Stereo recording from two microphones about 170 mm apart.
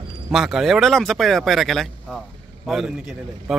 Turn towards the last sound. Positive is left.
turn(degrees=0)  # may be behind; listen again after turning